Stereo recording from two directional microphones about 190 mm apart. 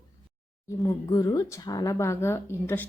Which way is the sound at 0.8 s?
20° left (ahead or behind).